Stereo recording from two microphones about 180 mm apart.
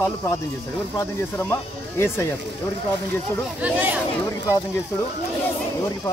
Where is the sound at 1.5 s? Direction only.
15° left (ahead or behind).